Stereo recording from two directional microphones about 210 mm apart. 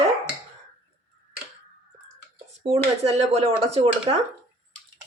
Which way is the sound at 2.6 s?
30° right (ahead or behind).